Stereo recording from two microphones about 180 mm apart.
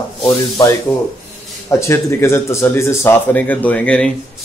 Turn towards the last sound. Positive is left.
turn(degrees=10)  # may be behind; listen again after turning